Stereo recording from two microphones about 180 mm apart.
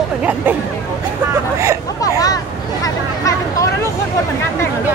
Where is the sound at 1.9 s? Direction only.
20° left (ahead or behind).